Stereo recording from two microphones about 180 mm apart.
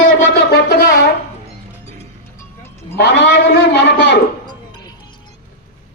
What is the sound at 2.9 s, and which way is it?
A man's voice, 70° left (ahead or behind).